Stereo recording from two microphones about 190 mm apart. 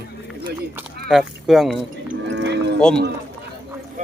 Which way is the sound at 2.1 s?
60° right (ahead or behind).